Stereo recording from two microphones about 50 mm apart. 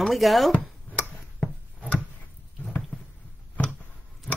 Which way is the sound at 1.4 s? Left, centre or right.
Left.